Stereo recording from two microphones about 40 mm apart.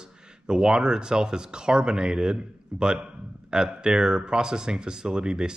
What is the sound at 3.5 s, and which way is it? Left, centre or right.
Speech, centre.